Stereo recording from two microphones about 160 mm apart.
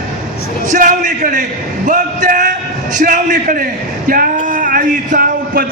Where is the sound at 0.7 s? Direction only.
55° right (ahead or behind).